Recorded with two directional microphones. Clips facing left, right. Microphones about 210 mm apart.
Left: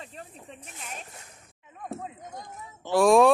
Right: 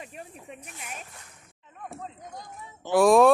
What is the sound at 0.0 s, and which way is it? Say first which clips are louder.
Speech: right 1 dB; 15° right (ahead or behind).